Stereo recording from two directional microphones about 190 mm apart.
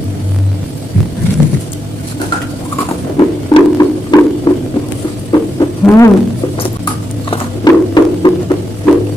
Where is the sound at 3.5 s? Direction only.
20° left (ahead or behind).